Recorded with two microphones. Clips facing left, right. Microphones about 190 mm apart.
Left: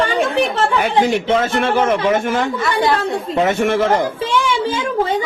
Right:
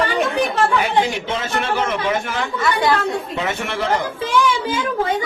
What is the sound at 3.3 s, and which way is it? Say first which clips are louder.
Speech: left 8 dB; 45° left (ahead or behind).